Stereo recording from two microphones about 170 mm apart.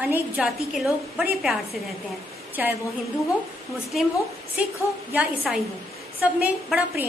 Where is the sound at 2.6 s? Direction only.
10° right (ahead or behind).